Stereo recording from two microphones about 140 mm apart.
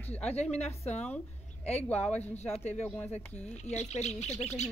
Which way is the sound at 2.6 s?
50° left (ahead or behind).